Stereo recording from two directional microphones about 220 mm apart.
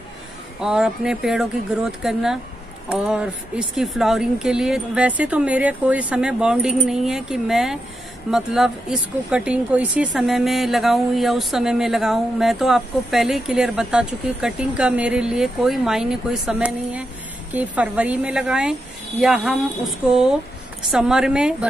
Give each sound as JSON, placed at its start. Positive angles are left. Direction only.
{"t": 0.6, "sound": "speech", "side_deg": -5}